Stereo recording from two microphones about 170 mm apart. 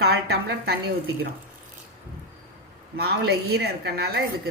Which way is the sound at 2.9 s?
70° right (ahead or behind).